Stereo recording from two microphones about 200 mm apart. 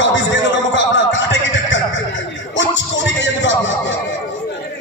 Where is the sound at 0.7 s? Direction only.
65° left (ahead or behind).